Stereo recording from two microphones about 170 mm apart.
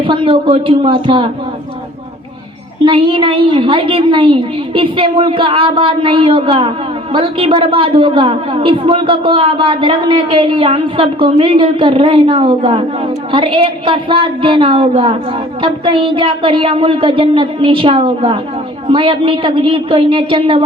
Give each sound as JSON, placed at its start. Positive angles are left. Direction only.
{"t": 0.0, "sound": "speech", "side_deg": -30}
{"t": 2.8, "sound": "a woman's voice", "side_deg": -30}